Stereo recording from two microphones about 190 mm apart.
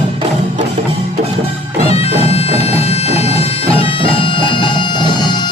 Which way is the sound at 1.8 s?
30° left (ahead or behind).